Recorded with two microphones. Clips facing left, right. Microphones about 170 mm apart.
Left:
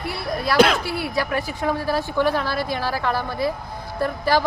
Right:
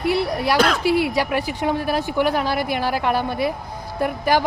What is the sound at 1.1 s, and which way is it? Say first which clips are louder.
Speech: right 2 dB; 15° right (ahead or behind).